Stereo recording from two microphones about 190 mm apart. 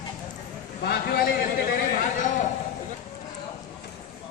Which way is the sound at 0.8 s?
55° left (ahead or behind).